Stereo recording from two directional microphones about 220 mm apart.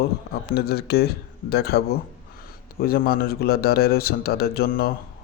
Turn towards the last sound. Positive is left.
turn(degrees=45)  # may be behind; listen again after turning